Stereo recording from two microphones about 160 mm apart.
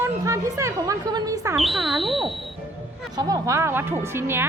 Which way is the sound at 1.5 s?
Centre (ahead or behind).